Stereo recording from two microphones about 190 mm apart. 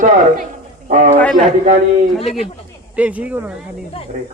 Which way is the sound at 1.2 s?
5° left (ahead or behind).